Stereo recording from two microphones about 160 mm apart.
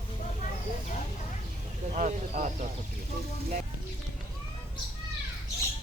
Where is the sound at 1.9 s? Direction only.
45° right (ahead or behind).